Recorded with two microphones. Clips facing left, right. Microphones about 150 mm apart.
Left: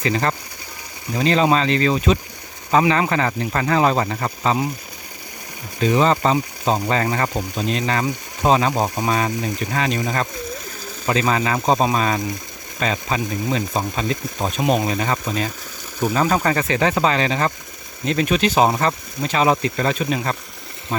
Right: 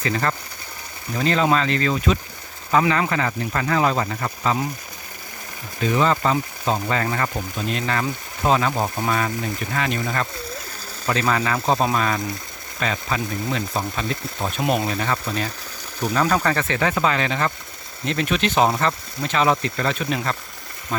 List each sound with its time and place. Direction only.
0.0 s speech: 20° left (ahead or behind)
5.8 s speech: 20° left (ahead or behind)
16.7 s speech: 25° left (ahead or behind)